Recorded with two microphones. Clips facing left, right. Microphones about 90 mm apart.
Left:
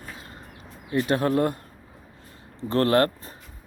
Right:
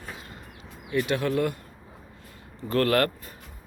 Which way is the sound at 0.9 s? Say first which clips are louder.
Left 3 dB; 35° left (ahead or behind).